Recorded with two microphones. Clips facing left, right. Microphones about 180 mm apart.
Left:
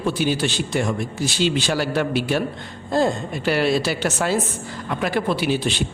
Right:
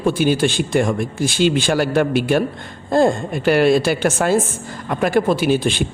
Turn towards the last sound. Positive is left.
turn(degrees=-50)  # may be behind; listen again after turning